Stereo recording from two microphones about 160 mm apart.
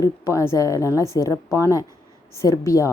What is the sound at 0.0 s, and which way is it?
Speech, 20° left (ahead or behind).